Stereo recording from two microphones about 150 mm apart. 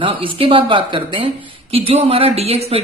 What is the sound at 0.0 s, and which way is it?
A man's voice, 35° right (ahead or behind).